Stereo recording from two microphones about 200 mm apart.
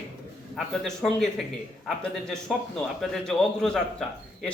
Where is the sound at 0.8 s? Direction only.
Centre (ahead or behind).